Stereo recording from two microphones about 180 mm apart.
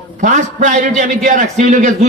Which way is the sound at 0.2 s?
45° right (ahead or behind).